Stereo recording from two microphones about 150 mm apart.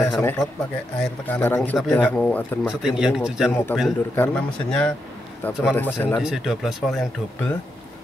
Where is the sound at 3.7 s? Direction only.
15° left (ahead or behind).